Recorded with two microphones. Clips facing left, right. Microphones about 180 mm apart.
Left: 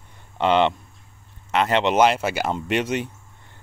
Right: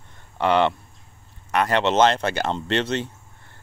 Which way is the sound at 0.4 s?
20° left (ahead or behind).